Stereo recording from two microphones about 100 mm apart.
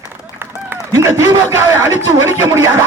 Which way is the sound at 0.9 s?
30° right (ahead or behind).